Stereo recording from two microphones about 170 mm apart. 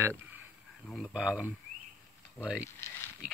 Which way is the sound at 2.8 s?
15° left (ahead or behind).